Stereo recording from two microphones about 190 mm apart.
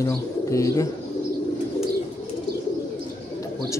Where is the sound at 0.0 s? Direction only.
15° left (ahead or behind).